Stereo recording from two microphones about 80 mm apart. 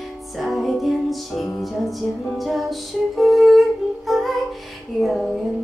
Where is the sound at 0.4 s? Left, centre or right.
Centre.